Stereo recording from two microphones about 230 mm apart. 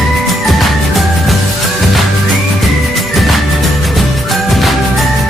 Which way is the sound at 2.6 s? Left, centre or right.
Centre.